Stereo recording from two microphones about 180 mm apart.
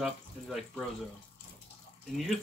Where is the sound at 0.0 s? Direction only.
Centre (ahead or behind).